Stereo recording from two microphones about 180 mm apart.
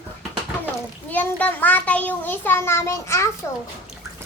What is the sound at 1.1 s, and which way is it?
A child's voice, 10° left (ahead or behind).